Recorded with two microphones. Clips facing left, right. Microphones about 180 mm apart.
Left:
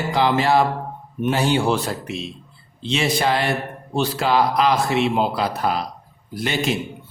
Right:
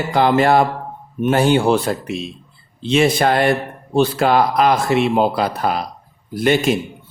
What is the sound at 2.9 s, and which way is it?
A man's voice, 50° right (ahead or behind).